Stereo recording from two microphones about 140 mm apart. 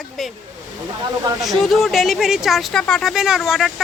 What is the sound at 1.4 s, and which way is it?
Speech, centre (ahead or behind).